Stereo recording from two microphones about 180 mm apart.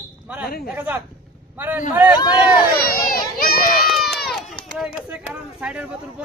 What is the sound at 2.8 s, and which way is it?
Run, 55° left (ahead or behind).